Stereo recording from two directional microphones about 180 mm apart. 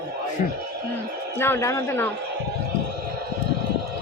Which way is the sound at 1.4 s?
15° left (ahead or behind).